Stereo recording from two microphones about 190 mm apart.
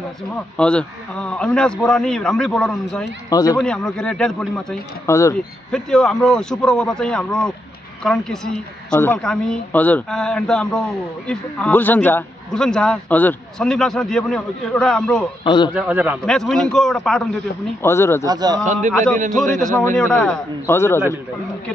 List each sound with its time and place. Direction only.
0.6 s speech: 5° left (ahead or behind)
3.3 s speech: 20° left (ahead or behind)
3.5 s speech: 5° left (ahead or behind)
5.0 s a man's voice: 15° left (ahead or behind)
5.7 s speech: 5° left (ahead or behind)
15.4 s a man's voice: 25° left (ahead or behind)
15.7 s a man's voice: 10° right (ahead or behind); by 18.2 s 15° left (ahead or behind)
18.2 s a man's voice: 20° right (ahead or behind)
19.6 s a man's voice: 10° left (ahead or behind)